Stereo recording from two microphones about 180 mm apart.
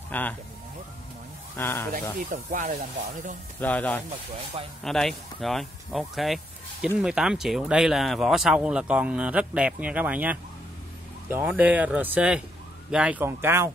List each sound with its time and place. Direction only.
0.1 s speech: 10° left (ahead or behind)
1.6 s speech: 15° left (ahead or behind)
2.1 s speech: 50° right (ahead or behind)
3.5 s speech: 10° left (ahead or behind); by 13.7 s 15° right (ahead or behind)